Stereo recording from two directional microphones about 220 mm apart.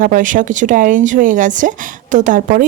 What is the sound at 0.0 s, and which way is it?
Speech, 35° right (ahead or behind).